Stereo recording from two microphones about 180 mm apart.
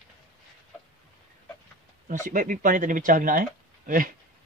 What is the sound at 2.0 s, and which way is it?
Speech, 45° right (ahead or behind).